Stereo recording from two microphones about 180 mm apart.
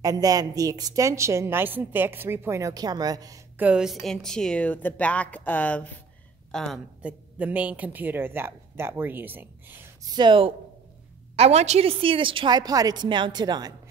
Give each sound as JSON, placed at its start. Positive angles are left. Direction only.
{"t": 0.0, "sound": "a woman's voice", "side_deg": -20}
{"t": 3.5, "sound": "a woman's voice", "side_deg": -5}
{"t": 7.0, "sound": "a woman's voice", "side_deg": -10}
{"t": 10.1, "sound": "a woman's voice", "side_deg": -25}